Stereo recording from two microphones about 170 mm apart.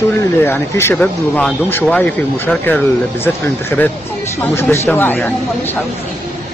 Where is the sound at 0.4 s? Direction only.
15° left (ahead or behind).